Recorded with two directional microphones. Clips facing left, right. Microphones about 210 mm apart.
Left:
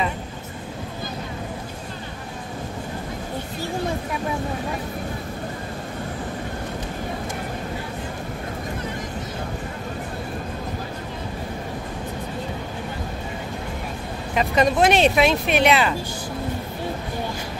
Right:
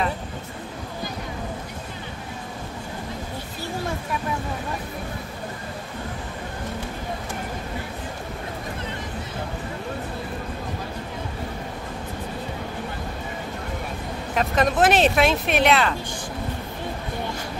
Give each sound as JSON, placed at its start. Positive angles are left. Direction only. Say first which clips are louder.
{"t": 14.3, "sound": "speech", "louder": "left 2 dB", "side_deg": 0}